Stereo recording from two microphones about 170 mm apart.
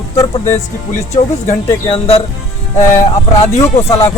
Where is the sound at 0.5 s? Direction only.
40° left (ahead or behind).